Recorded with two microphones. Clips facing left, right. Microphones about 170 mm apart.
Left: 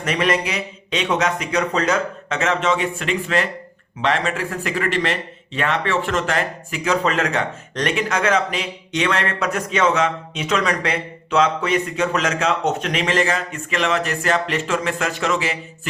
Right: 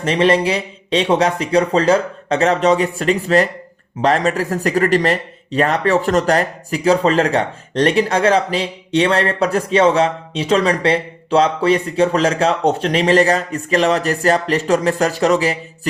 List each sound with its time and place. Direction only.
0.0 s speech: 30° right (ahead or behind)